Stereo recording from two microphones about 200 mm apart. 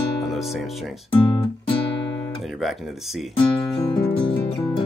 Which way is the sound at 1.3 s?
25° left (ahead or behind).